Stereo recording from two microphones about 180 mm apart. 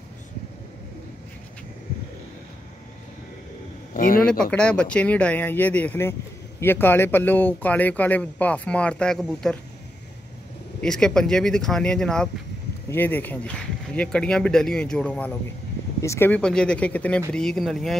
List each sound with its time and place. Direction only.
3.9 s a man's voice: 50° left (ahead or behind)
4.3 s speech: 5° left (ahead or behind)
10.8 s speech: 5° left (ahead or behind)